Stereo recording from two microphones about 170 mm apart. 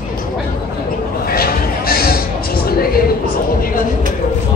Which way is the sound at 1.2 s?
65° left (ahead or behind).